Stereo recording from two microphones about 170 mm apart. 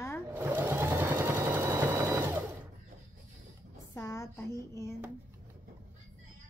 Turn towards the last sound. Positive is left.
turn(degrees=15)  # may be behind; listen again after turning